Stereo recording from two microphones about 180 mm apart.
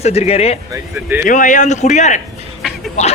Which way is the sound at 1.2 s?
45° left (ahead or behind).